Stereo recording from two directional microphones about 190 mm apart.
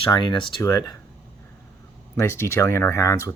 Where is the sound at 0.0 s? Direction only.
25° left (ahead or behind).